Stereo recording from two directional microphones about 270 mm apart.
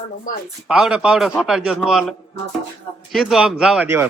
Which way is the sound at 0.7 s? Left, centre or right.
Centre.